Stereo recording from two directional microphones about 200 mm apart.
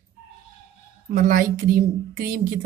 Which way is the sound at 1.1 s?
40° right (ahead or behind).